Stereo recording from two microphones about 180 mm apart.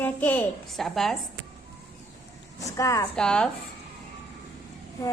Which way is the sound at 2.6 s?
20° left (ahead or behind).